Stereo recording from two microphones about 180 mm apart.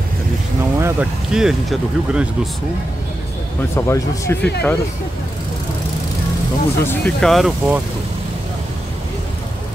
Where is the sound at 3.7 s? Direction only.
15° left (ahead or behind).